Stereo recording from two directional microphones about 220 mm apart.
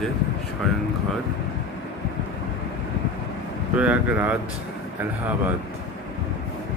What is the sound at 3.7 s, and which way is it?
Speech, 5° right (ahead or behind).